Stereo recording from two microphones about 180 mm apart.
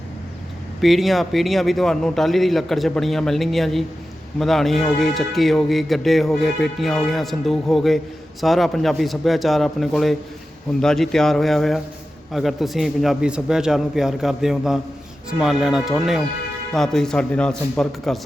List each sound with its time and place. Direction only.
0.8 s speech: centre (ahead or behind)